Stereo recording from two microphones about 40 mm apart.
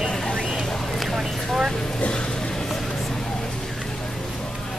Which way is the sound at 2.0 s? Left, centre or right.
Left.